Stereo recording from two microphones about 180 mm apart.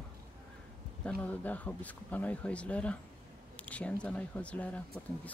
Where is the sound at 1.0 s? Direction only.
5° left (ahead or behind).